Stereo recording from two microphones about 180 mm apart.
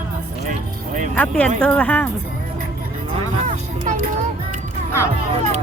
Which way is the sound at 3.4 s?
45° right (ahead or behind).